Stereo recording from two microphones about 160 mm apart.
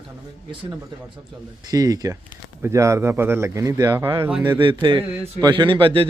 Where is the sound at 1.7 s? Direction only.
25° right (ahead or behind).